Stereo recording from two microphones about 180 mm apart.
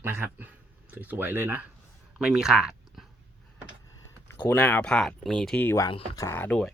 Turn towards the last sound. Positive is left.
turn(degrees=10)  # may be behind; listen again after turning